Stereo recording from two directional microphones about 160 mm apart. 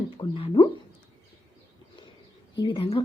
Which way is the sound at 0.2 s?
35° left (ahead or behind).